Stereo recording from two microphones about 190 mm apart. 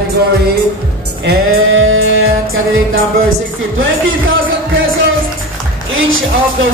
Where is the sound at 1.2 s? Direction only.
90° right.